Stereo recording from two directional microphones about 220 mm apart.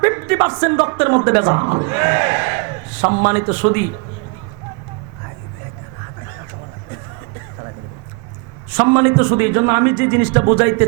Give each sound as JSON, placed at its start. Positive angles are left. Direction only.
{"t": 0.0, "sound": "speech", "side_deg": -15}
{"t": 3.0, "sound": "a man's voice", "side_deg": -30}
{"t": 3.2, "sound": "a man's voice", "side_deg": -10}
{"t": 8.7, "sound": "a man's voice", "side_deg": -15}